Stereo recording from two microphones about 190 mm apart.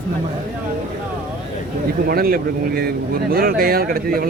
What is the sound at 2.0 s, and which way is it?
Speech, 55° right (ahead or behind).